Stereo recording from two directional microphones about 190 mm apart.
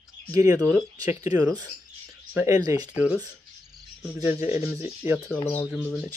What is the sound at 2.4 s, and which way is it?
Speech, 20° right (ahead or behind).